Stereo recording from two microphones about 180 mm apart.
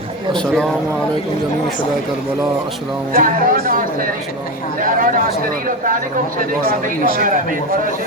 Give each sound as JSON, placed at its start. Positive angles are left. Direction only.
{"t": 0.3, "sound": "speech", "side_deg": 5}
{"t": 3.2, "sound": "speech", "side_deg": -50}
{"t": 4.8, "sound": "speech", "side_deg": -50}